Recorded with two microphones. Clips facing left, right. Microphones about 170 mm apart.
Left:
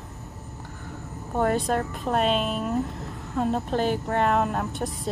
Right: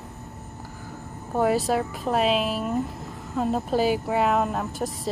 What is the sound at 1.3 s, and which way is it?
A woman's voice, 5° right (ahead or behind).